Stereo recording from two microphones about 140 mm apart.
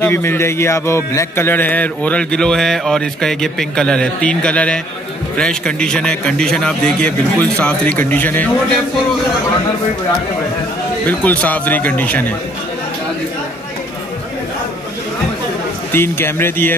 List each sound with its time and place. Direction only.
0.0 s speech: 15° left (ahead or behind)
11.1 s speech: 10° left (ahead or behind)
15.9 s speech: 15° left (ahead or behind)